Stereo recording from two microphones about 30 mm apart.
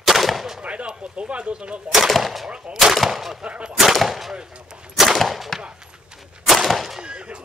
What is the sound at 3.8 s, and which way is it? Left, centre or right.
Speech, centre.